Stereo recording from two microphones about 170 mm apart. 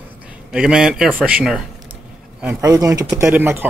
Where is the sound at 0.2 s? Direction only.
5° right (ahead or behind).